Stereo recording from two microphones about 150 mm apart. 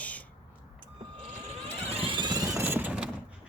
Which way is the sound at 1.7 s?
40° right (ahead or behind).